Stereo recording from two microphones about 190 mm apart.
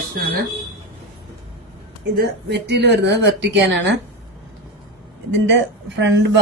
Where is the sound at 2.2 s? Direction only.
65° right (ahead or behind).